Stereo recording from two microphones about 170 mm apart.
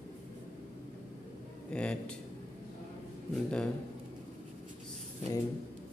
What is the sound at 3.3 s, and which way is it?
Speech, 5° left (ahead or behind).